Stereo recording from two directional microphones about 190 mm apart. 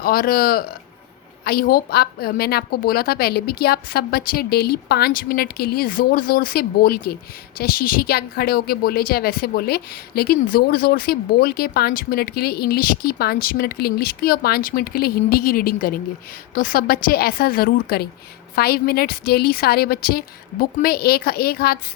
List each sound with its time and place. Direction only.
0.0 s a woman's voice: 50° left (ahead or behind)